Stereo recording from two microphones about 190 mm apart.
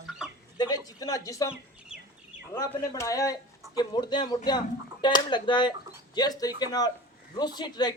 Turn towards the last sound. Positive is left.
turn(degrees=20)  # may be behind; listen again after turning